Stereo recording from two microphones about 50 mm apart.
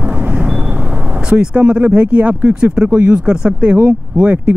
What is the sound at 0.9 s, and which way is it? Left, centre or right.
Vehicle, right.